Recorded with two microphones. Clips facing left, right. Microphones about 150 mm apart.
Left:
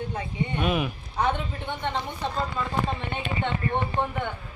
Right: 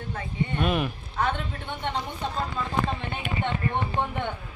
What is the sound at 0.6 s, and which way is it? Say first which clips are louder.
Speech: even; centre (ahead or behind).